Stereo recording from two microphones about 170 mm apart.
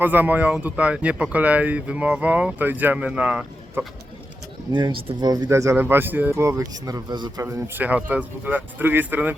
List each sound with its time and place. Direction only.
0.0 s speech: 10° right (ahead or behind)
4.7 s speech: 25° right (ahead or behind)
7.4 s speech: 10° right (ahead or behind)